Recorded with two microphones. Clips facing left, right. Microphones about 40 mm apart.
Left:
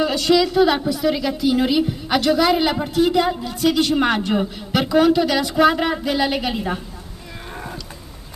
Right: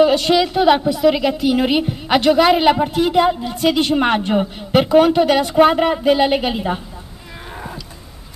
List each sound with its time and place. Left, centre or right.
0.0 s a woman's voice: right